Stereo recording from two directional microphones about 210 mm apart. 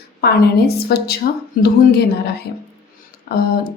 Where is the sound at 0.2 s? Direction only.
50° left (ahead or behind).